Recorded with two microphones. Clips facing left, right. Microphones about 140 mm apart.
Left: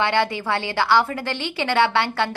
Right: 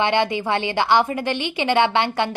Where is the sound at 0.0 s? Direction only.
20° right (ahead or behind).